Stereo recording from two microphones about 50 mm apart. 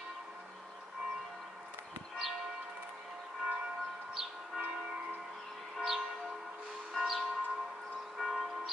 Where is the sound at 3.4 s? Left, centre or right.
Right.